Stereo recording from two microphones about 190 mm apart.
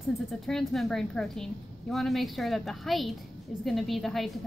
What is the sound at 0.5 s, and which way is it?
A woman's voice, centre (ahead or behind).